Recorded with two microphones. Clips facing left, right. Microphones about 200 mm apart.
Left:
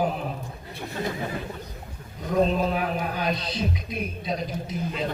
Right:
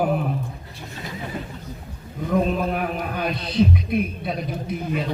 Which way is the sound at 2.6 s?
55° right (ahead or behind).